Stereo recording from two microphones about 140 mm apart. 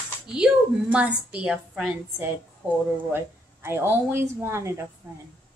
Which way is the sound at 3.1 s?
15° right (ahead or behind).